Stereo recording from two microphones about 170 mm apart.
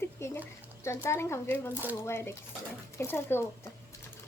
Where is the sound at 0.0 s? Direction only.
15° left (ahead or behind).